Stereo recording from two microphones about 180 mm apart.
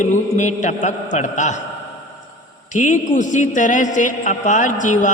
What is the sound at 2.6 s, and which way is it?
A man's voice, 45° left (ahead or behind).